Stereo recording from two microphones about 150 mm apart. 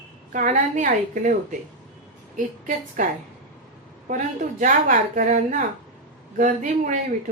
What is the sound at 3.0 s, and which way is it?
Speech, 60° right (ahead or behind).